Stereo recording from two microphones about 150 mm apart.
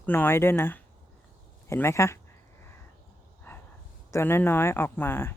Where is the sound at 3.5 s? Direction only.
15° left (ahead or behind).